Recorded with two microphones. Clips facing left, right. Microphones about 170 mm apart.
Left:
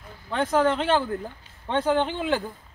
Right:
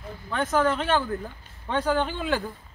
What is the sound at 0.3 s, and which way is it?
Speech, 30° left (ahead or behind).